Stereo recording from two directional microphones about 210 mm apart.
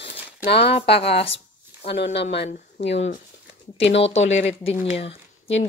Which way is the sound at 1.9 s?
55° left (ahead or behind).